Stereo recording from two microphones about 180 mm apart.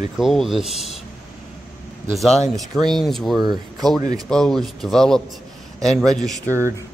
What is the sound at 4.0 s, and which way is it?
Speech, 20° right (ahead or behind).